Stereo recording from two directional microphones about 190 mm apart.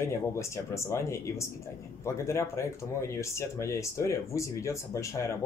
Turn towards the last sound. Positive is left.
turn(degrees=15)  # may be behind; listen again after turning